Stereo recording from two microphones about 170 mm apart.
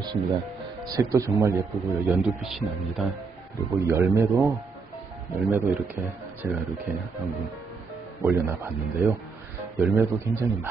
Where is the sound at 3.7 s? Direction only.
15° right (ahead or behind).